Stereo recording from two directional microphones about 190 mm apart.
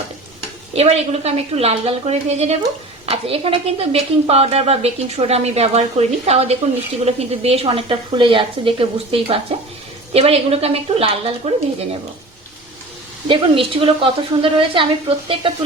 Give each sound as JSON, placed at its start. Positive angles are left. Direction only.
{"t": 0.7, "sound": "speech", "side_deg": -35}
{"t": 13.2, "sound": "speech", "side_deg": -30}